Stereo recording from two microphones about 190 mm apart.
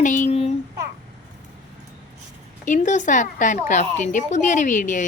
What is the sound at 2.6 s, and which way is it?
Speech, 40° left (ahead or behind).